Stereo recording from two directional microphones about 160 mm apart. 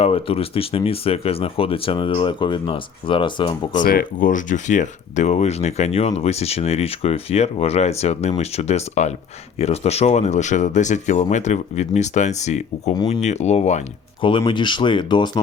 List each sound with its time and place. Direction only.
0.0 s speech: 35° left (ahead or behind)
3.8 s speech: 60° left (ahead or behind); by 13.8 s 45° left (ahead or behind)
14.2 s speech: 35° left (ahead or behind)